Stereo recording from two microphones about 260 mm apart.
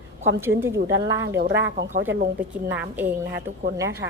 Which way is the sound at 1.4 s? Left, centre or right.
Right.